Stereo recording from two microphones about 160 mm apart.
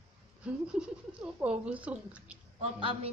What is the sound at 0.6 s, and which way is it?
Speech, 5° right (ahead or behind).